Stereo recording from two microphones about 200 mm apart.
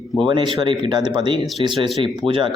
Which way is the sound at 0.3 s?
25° right (ahead or behind).